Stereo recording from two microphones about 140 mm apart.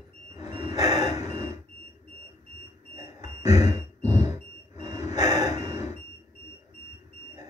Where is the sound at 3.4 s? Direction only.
55° left (ahead or behind).